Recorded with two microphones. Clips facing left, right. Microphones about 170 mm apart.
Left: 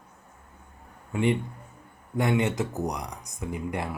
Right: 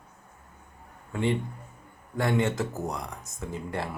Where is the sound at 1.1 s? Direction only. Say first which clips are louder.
Left 2 dB; 15° left (ahead or behind).